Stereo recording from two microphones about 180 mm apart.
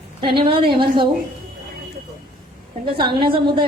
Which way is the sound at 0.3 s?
30° right (ahead or behind).